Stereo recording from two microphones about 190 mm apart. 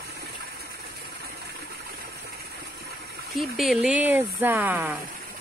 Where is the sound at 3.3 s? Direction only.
Centre (ahead or behind).